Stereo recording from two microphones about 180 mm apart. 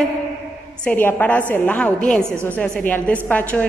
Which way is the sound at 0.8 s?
10° left (ahead or behind).